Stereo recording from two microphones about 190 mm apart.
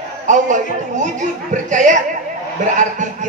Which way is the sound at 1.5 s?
40° right (ahead or behind).